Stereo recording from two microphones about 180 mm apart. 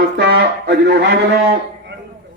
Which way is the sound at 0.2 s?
65° right (ahead or behind).